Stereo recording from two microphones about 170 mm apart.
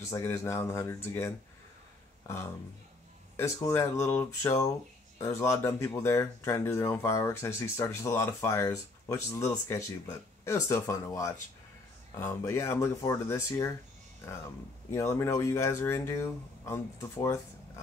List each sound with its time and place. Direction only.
0.1 s speech: 15° left (ahead or behind)
14.9 s speech: 15° left (ahead or behind)